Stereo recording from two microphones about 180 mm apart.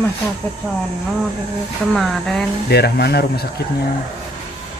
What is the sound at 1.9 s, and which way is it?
Speech, centre (ahead or behind).